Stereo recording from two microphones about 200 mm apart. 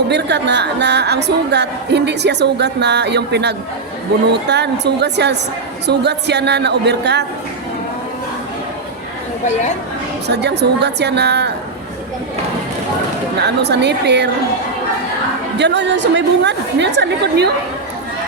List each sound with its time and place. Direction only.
0.1 s a woman's voice: 60° right (ahead or behind)
9.5 s speech: 35° left (ahead or behind)
10.2 s a woman's voice: 55° right (ahead or behind)
13.6 s a woman's voice: 60° right (ahead or behind)
15.5 s a woman's voice: 60° right (ahead or behind)